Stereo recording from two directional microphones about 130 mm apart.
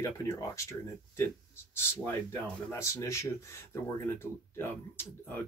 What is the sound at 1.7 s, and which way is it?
Speech, 15° left (ahead or behind).